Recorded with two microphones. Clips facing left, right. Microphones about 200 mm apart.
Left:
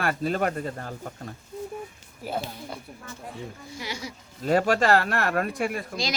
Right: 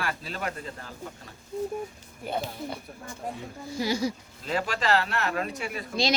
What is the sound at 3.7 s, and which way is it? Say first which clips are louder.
Speech: right 10 dB; 35° right (ahead or behind).